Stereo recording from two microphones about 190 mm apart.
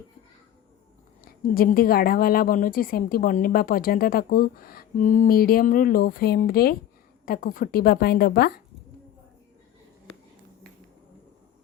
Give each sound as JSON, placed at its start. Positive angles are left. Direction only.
{"t": 1.2, "sound": "a woman's voice", "side_deg": 50}